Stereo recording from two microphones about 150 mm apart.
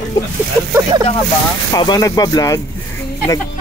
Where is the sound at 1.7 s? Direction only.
25° left (ahead or behind).